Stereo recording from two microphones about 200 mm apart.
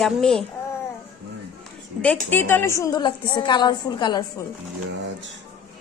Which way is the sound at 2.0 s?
10° left (ahead or behind).